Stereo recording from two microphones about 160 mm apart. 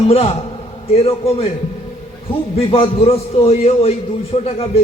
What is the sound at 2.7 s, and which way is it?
Speech, 35° left (ahead or behind).